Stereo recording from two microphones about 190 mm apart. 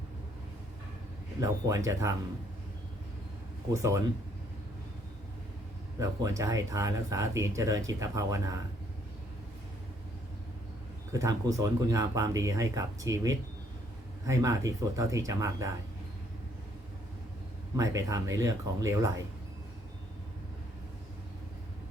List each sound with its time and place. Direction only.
1.4 s speech: 15° right (ahead or behind)
3.7 s speech: 15° right (ahead or behind)
6.0 s speech: 15° right (ahead or behind)
11.1 s speech: 15° right (ahead or behind)
17.7 s speech: 20° right (ahead or behind)